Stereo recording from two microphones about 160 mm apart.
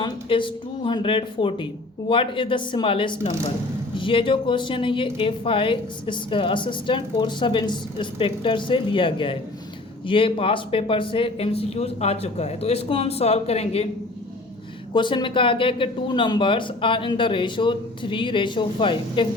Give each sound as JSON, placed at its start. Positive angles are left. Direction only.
{"t": 0.0, "sound": "speech", "side_deg": 30}
{"t": 14.9, "sound": "speech", "side_deg": 30}